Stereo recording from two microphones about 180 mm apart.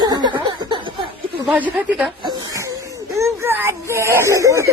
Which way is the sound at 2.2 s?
25° right (ahead or behind).